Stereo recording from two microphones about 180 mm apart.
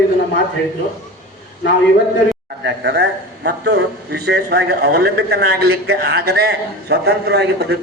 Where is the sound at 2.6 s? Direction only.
65° right (ahead or behind).